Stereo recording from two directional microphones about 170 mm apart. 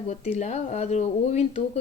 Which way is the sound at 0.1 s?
40° left (ahead or behind).